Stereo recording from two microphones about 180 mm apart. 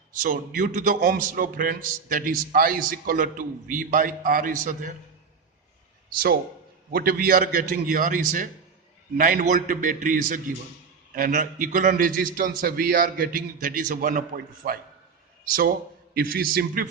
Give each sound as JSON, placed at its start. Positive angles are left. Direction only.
{"t": 0.2, "sound": "a man's voice", "side_deg": -50}
{"t": 6.9, "sound": "a man's voice", "side_deg": -55}